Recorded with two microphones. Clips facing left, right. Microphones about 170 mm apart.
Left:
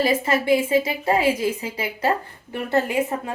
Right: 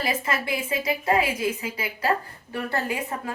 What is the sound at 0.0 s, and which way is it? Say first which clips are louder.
A woman's voice: left 7 dB; 30° left (ahead or behind).